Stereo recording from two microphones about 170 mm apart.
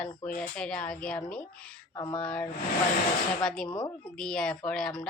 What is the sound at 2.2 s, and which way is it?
A child's voice, 5° left (ahead or behind).